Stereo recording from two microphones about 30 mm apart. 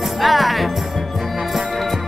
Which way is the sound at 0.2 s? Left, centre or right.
Centre.